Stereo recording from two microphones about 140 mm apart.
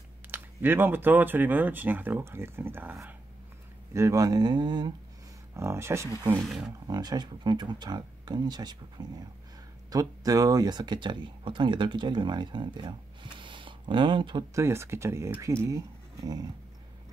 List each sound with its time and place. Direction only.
0.3 s speech: 15° right (ahead or behind); by 4.9 s 30° right (ahead or behind)
5.6 s speech: 20° right (ahead or behind)
6.4 s speech: centre (ahead or behind)
6.9 s speech: 30° right (ahead or behind)
14.5 s speech: 20° right (ahead or behind)